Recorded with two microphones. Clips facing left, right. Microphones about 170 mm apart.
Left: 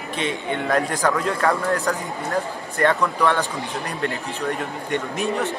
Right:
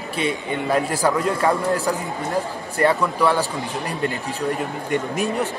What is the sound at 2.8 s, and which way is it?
Speech, 5° right (ahead or behind).